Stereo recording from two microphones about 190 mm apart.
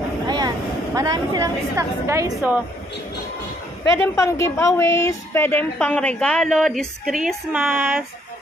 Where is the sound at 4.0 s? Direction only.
15° left (ahead or behind).